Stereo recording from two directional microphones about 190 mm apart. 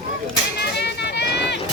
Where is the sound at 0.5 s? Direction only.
60° left (ahead or behind).